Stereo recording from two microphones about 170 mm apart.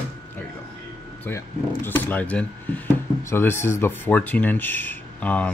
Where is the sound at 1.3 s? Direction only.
15° left (ahead or behind).